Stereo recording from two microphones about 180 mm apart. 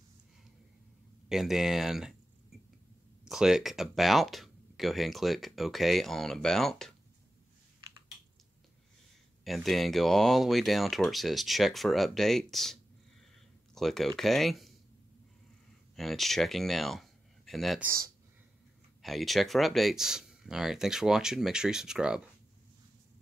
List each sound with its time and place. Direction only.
1.3 s speech: centre (ahead or behind)
9.4 s speech: centre (ahead or behind)
13.7 s speech: centre (ahead or behind)
16.0 s speech: centre (ahead or behind)
17.8 s speech: 15° right (ahead or behind)
19.0 s speech: centre (ahead or behind)